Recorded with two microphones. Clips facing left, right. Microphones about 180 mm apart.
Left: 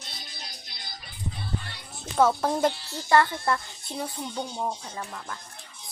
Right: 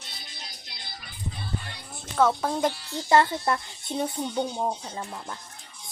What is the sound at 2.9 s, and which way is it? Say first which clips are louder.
Speech: right 4 dB; 20° right (ahead or behind).